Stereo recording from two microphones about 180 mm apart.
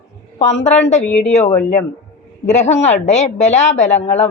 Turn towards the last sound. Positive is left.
turn(degrees=40)  # may be behind; listen again after turning